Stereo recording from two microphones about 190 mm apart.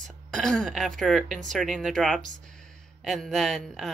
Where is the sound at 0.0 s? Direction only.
5° left (ahead or behind).